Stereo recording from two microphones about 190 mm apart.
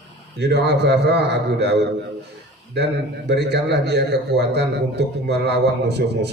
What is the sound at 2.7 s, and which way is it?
A man's voice, 60° right (ahead or behind).